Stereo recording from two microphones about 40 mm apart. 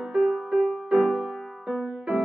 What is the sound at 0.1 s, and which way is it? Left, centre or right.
Music, centre.